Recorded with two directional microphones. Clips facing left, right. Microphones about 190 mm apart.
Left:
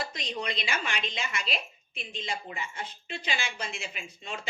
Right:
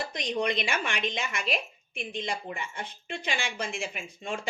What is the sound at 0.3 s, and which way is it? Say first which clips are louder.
Speech: right 5 dB; 55° right (ahead or behind).